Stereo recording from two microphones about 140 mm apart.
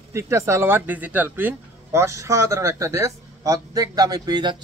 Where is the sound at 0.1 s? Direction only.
20° right (ahead or behind).